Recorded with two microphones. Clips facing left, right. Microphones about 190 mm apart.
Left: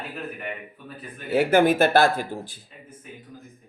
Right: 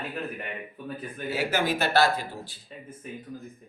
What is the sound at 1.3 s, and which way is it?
Speech, 55° left (ahead or behind).